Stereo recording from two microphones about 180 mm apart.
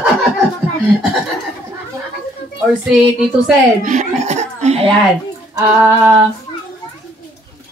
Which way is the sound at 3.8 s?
45° right (ahead or behind).